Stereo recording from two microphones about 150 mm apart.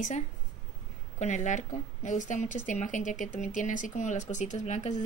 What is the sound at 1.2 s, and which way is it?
Speech, 55° left (ahead or behind).